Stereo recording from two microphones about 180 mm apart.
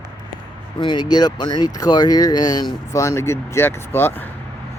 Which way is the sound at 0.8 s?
25° left (ahead or behind).